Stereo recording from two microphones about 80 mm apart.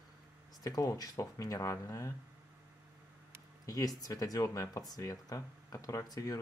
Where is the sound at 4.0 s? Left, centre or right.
Left.